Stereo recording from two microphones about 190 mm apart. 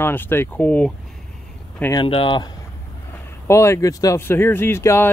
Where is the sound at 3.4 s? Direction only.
15° left (ahead or behind).